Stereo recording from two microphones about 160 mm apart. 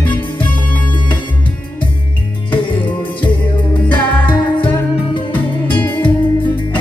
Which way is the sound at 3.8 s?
10° left (ahead or behind).